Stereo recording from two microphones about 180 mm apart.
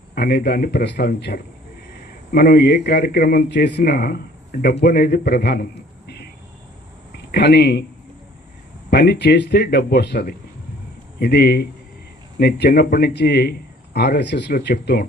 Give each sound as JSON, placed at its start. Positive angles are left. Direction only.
{"t": 0.1, "sound": "a man's voice", "side_deg": 60}
{"t": 7.3, "sound": "a man's voice", "side_deg": 65}
{"t": 8.9, "sound": "a man's voice", "side_deg": 65}